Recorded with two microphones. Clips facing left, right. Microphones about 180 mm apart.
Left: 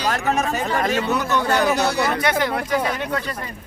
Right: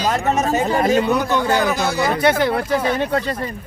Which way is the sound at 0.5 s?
25° right (ahead or behind).